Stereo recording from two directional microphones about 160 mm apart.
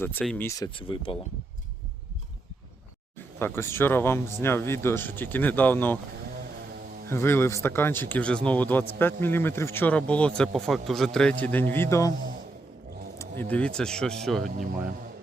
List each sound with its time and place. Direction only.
0.0 s speech: 10° left (ahead or behind); by 1.2 s 35° left (ahead or behind)
3.3 s speech: 15° left (ahead or behind)
7.1 s speech: 15° left (ahead or behind)
13.1 s speech: 10° left (ahead or behind)
14.4 s speech: 55° right (ahead or behind)